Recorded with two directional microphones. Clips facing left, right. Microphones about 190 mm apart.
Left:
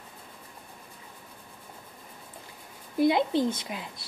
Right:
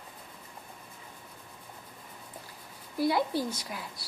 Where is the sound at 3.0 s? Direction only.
20° left (ahead or behind).